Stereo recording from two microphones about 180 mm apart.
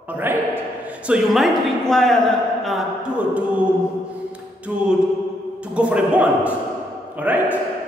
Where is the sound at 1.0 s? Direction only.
5° right (ahead or behind).